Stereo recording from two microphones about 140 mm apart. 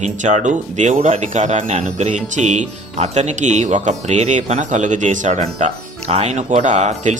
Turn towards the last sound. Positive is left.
turn(degrees=-55)  # may be behind; listen again after turning